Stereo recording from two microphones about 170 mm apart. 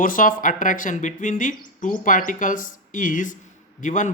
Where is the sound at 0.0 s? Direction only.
55° left (ahead or behind).